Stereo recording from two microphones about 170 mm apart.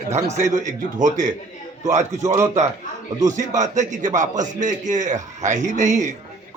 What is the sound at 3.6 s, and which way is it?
A man's voice, 45° right (ahead or behind).